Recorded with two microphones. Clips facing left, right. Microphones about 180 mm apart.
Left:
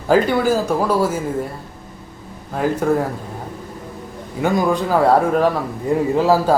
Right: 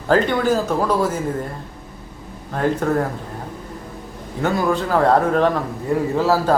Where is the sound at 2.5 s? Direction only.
10° left (ahead or behind).